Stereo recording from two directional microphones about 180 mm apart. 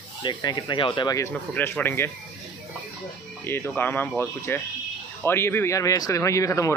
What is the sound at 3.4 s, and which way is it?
Speech, 15° left (ahead or behind).